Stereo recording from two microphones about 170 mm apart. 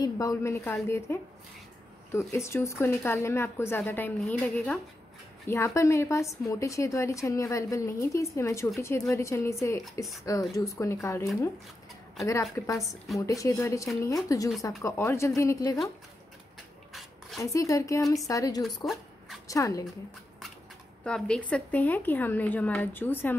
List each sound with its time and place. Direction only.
0.0 s a woman's voice: 20° left (ahead or behind)
5.5 s a woman's voice: 15° left (ahead or behind)
12.3 s a woman's voice: 20° left (ahead or behind)
17.4 s speech: 20° left (ahead or behind)
18.9 s zipper: centre (ahead or behind)
19.4 s speech: 20° left (ahead or behind)
21.0 s a woman's voice: 5° left (ahead or behind)